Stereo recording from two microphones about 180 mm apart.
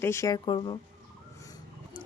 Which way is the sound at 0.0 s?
15° left (ahead or behind).